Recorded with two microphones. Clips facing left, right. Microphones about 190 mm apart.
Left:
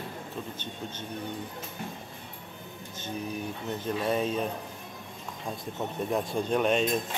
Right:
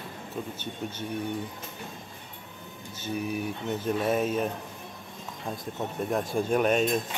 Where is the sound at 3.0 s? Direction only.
10° right (ahead or behind).